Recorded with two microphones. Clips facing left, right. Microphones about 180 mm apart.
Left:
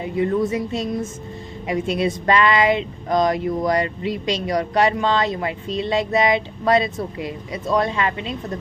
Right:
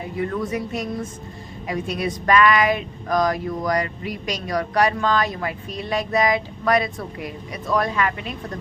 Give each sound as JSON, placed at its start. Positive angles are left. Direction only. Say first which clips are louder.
{"t": 0.0, "sound": "speech", "louder": "left 5 dB", "side_deg": 20}